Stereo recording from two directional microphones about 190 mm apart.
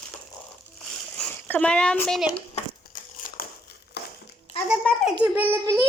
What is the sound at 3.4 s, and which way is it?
Crumpling, 50° left (ahead or behind).